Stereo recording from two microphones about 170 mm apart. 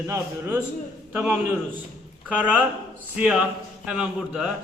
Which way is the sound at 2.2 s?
10° right (ahead or behind).